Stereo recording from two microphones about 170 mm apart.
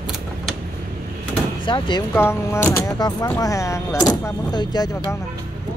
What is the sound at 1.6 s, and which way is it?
Speech, 25° left (ahead or behind).